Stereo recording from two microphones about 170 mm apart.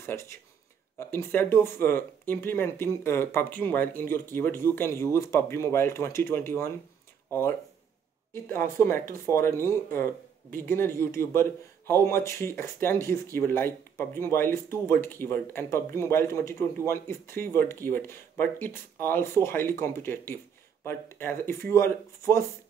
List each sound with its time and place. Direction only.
0.0 s speech: 15° left (ahead or behind)